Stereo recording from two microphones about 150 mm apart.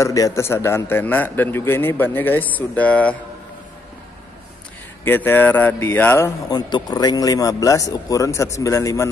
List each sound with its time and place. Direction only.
0.0 s a man's voice: 20° left (ahead or behind)
5.0 s a man's voice: 15° left (ahead or behind)
6.5 s speech: 25° left (ahead or behind)